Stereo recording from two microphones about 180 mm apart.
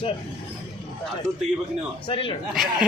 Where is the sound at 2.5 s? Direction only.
Centre (ahead or behind).